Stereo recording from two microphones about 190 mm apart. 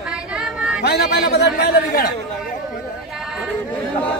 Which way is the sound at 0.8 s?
55° left (ahead or behind).